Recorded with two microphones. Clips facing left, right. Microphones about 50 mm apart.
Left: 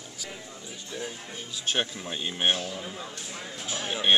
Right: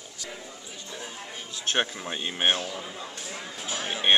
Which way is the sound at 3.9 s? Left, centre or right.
Centre.